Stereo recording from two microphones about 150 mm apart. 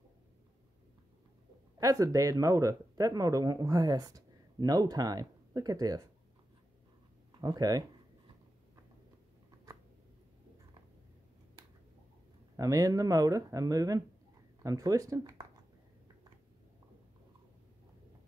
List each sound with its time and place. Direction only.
1.8 s speech: 20° right (ahead or behind)
7.3 s speech: 25° right (ahead or behind)
12.5 s speech: 25° right (ahead or behind)